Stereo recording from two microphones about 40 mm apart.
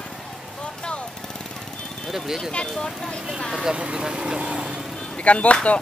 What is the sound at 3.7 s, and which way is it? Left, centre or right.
Speech, right.